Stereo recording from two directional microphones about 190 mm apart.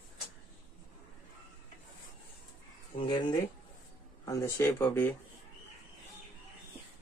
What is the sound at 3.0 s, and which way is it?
Speech, 25° left (ahead or behind).